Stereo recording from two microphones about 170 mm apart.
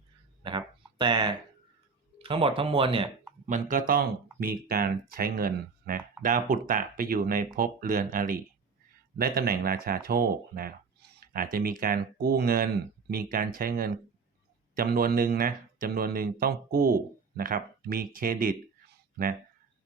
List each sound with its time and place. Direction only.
0.4 s a sound: 25° right (ahead or behind)
2.1 s speech: 30° right (ahead or behind)
3.4 s speech: 50° right (ahead or behind)